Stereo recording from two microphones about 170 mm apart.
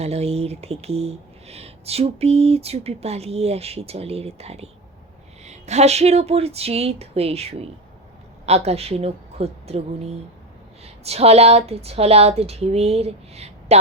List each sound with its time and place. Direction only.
0.0 s speech: 40° right (ahead or behind)